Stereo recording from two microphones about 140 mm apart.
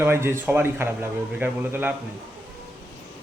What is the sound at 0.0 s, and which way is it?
Speech, 20° right (ahead or behind).